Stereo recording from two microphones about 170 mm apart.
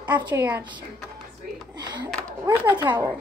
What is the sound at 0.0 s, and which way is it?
Speech, 25° right (ahead or behind).